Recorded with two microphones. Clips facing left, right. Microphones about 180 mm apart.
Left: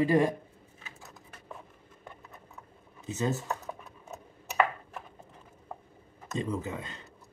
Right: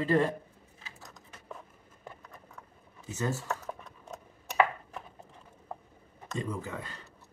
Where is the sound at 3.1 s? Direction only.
20° left (ahead or behind).